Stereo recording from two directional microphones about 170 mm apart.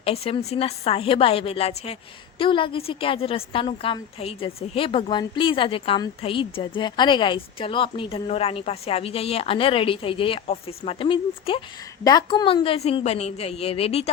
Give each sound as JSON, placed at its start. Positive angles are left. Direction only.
{"t": 0.0, "sound": "a woman's voice", "side_deg": 35}